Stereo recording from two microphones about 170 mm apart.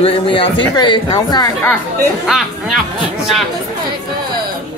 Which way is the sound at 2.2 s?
Centre (ahead or behind).